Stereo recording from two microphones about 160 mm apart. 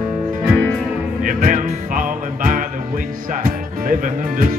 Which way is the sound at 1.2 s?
55° right (ahead or behind).